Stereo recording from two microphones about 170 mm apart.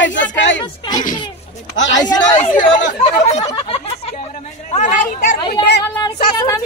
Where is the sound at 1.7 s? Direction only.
90° left.